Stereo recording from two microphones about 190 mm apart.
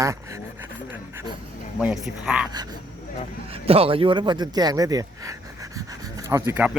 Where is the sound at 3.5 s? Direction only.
30° right (ahead or behind).